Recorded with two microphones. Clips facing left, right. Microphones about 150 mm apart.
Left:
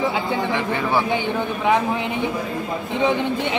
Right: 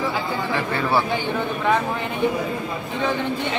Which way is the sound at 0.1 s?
15° left (ahead or behind).